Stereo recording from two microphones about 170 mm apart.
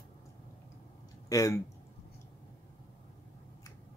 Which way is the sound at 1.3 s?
20° left (ahead or behind).